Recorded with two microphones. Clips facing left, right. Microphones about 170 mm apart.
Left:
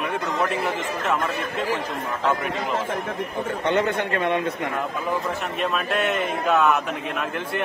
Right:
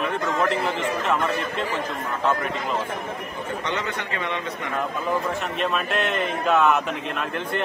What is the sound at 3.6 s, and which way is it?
A man's voice, 55° left (ahead or behind).